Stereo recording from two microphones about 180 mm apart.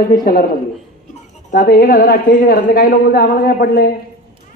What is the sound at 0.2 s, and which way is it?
Speech, 50° left (ahead or behind).